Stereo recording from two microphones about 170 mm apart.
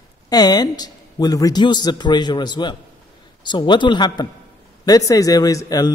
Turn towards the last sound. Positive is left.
turn(degrees=20)  # may be behind; listen again after turning